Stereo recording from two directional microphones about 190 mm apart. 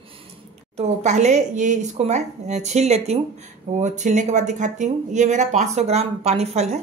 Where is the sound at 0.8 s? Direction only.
35° right (ahead or behind).